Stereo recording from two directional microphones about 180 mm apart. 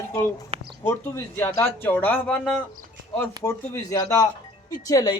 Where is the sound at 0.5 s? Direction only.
35° right (ahead or behind).